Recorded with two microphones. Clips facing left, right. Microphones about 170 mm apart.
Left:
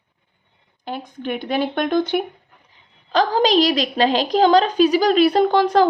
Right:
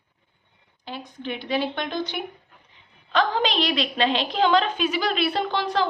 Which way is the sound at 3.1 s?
35° left (ahead or behind).